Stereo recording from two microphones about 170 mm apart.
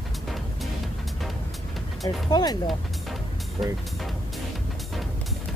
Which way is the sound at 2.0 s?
25° left (ahead or behind).